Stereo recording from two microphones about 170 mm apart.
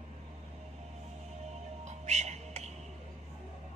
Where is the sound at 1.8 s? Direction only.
40° right (ahead or behind).